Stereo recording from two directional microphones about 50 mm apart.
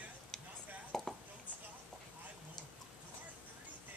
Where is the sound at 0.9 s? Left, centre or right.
Centre.